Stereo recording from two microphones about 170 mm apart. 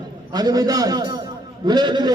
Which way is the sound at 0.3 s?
20° right (ahead or behind).